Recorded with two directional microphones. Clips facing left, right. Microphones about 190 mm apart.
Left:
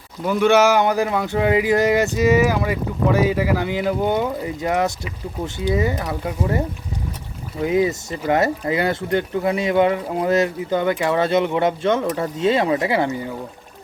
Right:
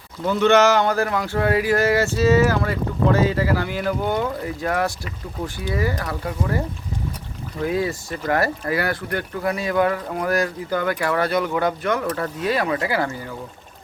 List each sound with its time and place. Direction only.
0.3 s speech: 10° left (ahead or behind)
7.6 s speech: 20° left (ahead or behind)